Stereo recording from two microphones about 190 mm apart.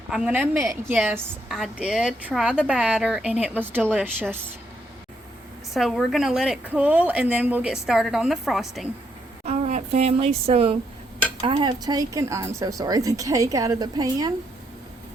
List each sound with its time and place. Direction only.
0.1 s a woman's voice: 5° right (ahead or behind)
5.7 s a woman's voice: centre (ahead or behind)
9.5 s speech: 35° right (ahead or behind); by 14.3 s 20° right (ahead or behind)